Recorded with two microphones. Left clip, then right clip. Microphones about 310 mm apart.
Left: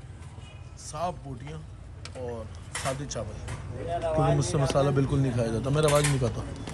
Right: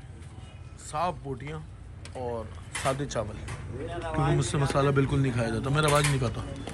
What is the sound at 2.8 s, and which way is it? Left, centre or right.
Speech, centre.